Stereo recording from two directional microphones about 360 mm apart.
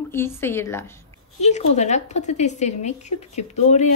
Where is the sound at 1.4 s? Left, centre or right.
Centre.